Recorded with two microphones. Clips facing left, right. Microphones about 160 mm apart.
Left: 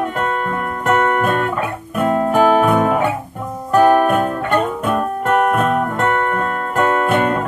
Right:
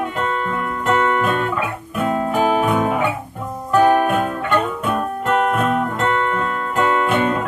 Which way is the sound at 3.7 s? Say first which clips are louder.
Left 2 dB; 45° left (ahead or behind).